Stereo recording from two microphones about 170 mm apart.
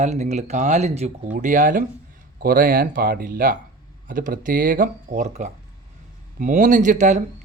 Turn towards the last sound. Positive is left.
turn(degrees=-45)  # may be behind; listen again after turning